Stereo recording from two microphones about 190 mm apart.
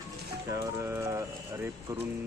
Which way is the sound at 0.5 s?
15° right (ahead or behind).